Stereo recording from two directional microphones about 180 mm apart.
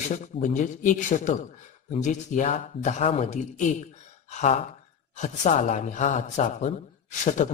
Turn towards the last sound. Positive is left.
turn(degrees=40)  # may be behind; listen again after turning